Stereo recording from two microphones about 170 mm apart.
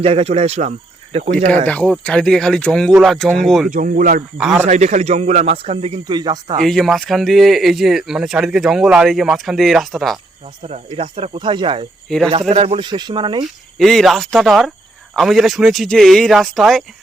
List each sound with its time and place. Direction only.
0.0 s a man's voice: 35° right (ahead or behind)
1.6 s speech: 10° left (ahead or behind)
3.7 s a man's voice: 50° right (ahead or behind); by 6.6 s 25° right (ahead or behind)
6.6 s speech: centre (ahead or behind)
10.6 s a man's voice: 35° right (ahead or behind)
12.0 s speech: centre (ahead or behind)
12.3 s speech: 35° right (ahead or behind)
13.7 s speech: centre (ahead or behind)